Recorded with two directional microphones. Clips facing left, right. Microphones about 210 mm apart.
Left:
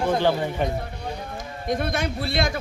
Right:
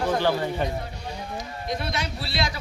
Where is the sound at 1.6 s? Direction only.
50° left (ahead or behind).